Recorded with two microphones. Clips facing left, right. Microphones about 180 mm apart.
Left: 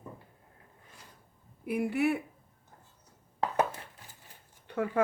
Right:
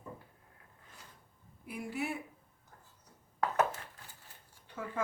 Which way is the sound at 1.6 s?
65° left (ahead or behind).